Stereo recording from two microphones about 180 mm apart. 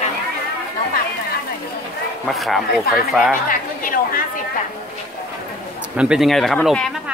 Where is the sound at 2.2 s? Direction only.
Centre (ahead or behind).